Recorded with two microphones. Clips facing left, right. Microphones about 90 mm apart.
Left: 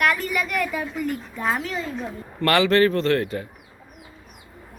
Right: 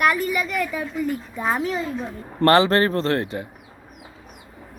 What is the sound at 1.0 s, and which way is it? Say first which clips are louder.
Speech: right 2 dB; 15° right (ahead or behind).